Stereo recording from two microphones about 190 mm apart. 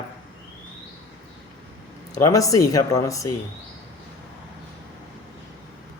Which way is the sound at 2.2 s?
15° left (ahead or behind).